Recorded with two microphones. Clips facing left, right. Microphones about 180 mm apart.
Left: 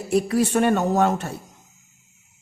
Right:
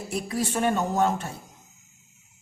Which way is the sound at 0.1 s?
65° left (ahead or behind).